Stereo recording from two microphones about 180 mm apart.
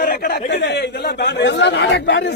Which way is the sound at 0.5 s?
70° left (ahead or behind).